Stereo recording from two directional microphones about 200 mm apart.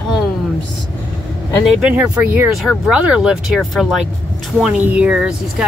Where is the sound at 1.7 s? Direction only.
5° right (ahead or behind).